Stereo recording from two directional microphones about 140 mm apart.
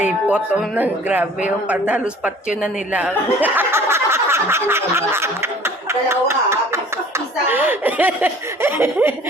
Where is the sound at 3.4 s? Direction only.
15° right (ahead or behind).